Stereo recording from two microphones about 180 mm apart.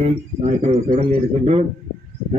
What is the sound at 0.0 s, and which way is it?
A man's voice, 30° right (ahead or behind).